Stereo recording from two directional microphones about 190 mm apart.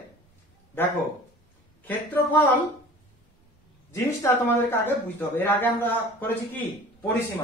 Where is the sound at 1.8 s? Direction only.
10° left (ahead or behind).